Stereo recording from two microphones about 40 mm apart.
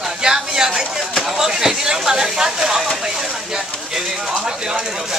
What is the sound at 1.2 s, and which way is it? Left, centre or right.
Speech, centre.